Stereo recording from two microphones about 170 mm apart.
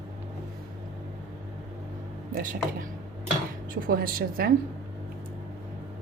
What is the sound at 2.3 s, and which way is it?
Speech, 55° right (ahead or behind).